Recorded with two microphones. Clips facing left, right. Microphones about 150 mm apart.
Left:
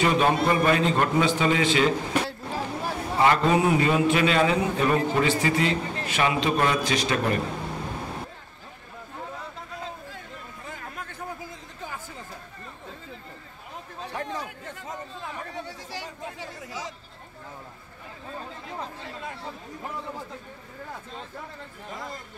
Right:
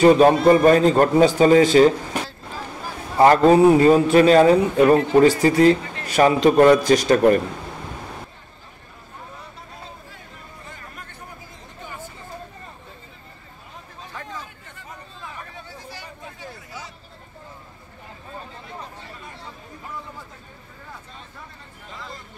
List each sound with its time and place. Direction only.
0.0 s a man's voice: 40° right (ahead or behind)
3.2 s a man's voice: 40° right (ahead or behind)
15.5 s a sound: 90° left